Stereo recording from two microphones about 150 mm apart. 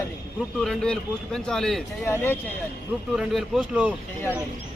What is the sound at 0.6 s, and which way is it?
Speech, 5° left (ahead or behind).